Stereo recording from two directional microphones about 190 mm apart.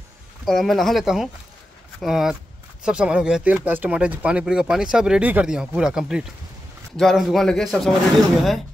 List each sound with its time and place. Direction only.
0.5 s speech: centre (ahead or behind)